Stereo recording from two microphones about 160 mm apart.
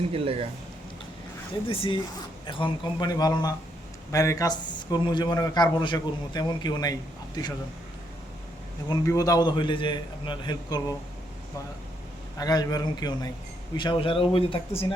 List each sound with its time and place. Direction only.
0.1 s speech: 35° right (ahead or behind)
1.6 s a man's voice: 35° left (ahead or behind)
8.9 s a man's voice: 20° left (ahead or behind)
12.4 s a man's voice: 25° left (ahead or behind)